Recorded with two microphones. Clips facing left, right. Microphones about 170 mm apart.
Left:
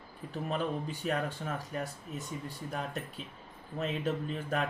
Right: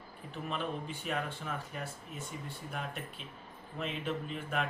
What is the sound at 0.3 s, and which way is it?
Speech, 40° left (ahead or behind).